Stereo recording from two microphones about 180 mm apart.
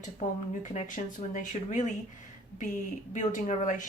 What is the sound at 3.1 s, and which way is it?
Speech, 45° left (ahead or behind).